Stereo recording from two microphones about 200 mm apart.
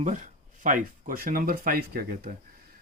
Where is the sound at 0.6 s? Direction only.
40° right (ahead or behind).